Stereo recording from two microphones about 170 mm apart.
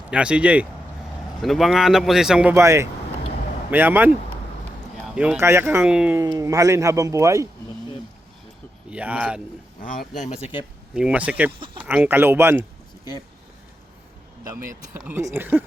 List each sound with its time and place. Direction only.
0.1 s speech: 5° right (ahead or behind)
6.1 s speech: 20° right (ahead or behind)
8.9 s speech: 5° right (ahead or behind)
9.8 s speech: 50° left (ahead or behind); by 10.7 s 35° left (ahead or behind)
10.9 s speech: 5° right (ahead or behind)
15.0 s speech: 15° right (ahead or behind)